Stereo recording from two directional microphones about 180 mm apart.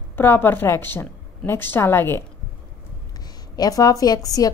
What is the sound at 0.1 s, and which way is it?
A woman's voice, 10° left (ahead or behind).